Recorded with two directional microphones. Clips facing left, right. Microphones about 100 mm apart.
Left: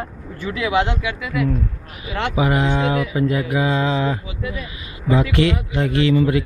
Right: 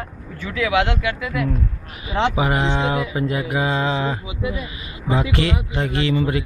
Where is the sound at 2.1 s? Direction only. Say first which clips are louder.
Even; 15° right (ahead or behind).